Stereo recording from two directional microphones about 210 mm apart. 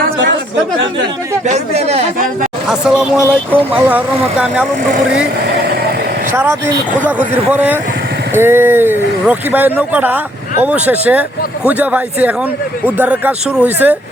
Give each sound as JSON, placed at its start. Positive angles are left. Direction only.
{"t": 1.5, "sound": "speech", "side_deg": -30}
{"t": 2.1, "sound": "speech", "side_deg": -40}
{"t": 2.6, "sound": "speech", "side_deg": -5}
{"t": 6.3, "sound": "speech", "side_deg": -10}